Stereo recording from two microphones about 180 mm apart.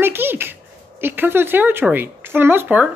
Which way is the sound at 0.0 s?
10° right (ahead or behind).